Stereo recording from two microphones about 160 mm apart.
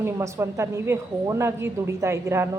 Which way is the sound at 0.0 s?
15° right (ahead or behind).